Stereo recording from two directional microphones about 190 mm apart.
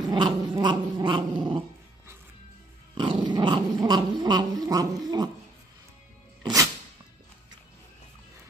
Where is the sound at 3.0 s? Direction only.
25° right (ahead or behind).